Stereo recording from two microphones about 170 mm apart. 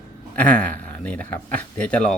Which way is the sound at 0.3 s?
10° left (ahead or behind).